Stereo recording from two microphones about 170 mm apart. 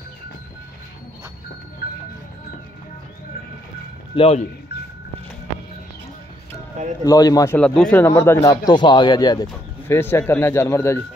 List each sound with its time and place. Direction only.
4.1 s speech: 35° left (ahead or behind)
7.1 s a man's voice: 20° left (ahead or behind)
7.5 s speech: 5° left (ahead or behind)